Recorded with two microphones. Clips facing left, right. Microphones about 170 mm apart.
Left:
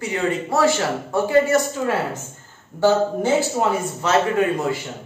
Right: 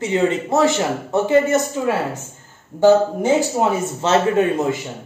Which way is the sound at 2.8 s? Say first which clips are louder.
Right 4 dB; 15° right (ahead or behind).